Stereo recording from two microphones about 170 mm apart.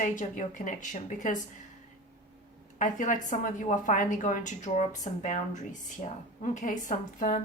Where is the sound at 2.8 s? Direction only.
50° left (ahead or behind).